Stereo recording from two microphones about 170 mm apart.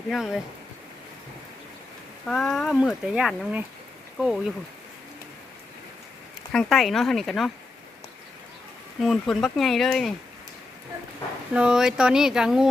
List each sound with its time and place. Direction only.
0.1 s speech: 5° right (ahead or behind)
2.2 s speech: 5° left (ahead or behind)
6.5 s speech: centre (ahead or behind)
9.0 s speech: centre (ahead or behind)
11.5 s speech: 5° right (ahead or behind)